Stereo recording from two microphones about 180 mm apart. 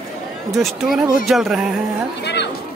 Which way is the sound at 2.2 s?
70° left (ahead or behind).